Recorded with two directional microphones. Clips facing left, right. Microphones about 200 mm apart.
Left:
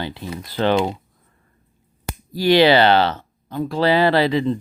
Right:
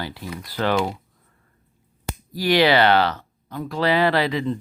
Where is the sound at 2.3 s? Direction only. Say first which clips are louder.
Left 4 dB; 25° left (ahead or behind).